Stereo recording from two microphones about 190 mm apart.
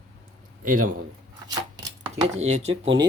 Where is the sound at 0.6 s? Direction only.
45° right (ahead or behind).